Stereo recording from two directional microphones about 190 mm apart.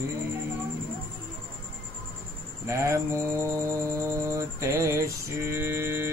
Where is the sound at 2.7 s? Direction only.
15° right (ahead or behind).